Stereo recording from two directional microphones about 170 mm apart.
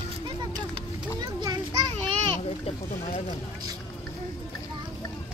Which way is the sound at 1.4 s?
20° right (ahead or behind).